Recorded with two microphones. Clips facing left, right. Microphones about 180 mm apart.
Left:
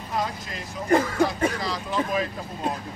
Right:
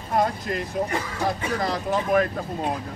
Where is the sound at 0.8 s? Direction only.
45° left (ahead or behind).